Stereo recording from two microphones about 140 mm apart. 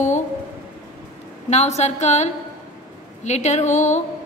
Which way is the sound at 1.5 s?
55° left (ahead or behind).